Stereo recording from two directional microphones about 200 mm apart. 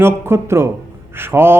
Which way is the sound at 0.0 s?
10° right (ahead or behind).